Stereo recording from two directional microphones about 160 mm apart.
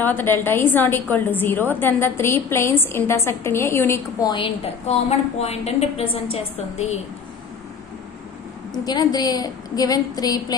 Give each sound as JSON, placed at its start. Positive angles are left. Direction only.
{"t": 0.0, "sound": "a woman's voice", "side_deg": 15}
{"t": 4.8, "sound": "a woman's voice", "side_deg": 40}
{"t": 8.7, "sound": "a woman's voice", "side_deg": 25}